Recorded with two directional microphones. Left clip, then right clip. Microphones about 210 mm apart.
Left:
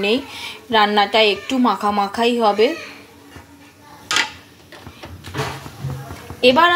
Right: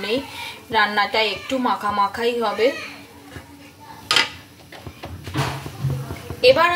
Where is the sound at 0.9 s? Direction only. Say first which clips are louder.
Left 5 dB; 30° left (ahead or behind).